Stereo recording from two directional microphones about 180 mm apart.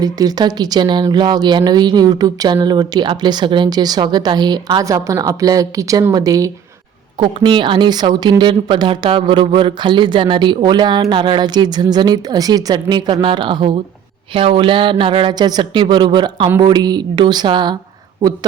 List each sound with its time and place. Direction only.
0.0 s a woman's voice: 20° right (ahead or behind)